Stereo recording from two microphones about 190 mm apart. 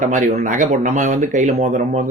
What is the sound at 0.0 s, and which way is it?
Speech, 40° right (ahead or behind).